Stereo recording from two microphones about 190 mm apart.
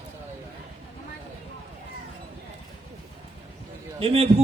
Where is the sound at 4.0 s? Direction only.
30° right (ahead or behind).